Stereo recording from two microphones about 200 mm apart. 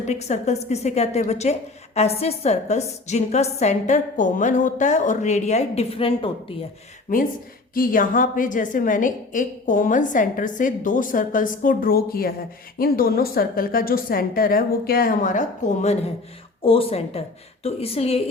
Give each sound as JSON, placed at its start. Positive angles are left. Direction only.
{"t": 0.0, "sound": "a woman's voice", "side_deg": 35}
{"t": 7.1, "sound": "a woman's voice", "side_deg": 40}